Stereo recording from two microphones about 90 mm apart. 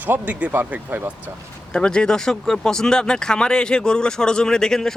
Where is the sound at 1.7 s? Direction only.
10° left (ahead or behind).